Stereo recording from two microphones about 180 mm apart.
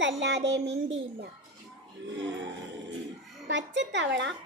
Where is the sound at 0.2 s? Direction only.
80° right.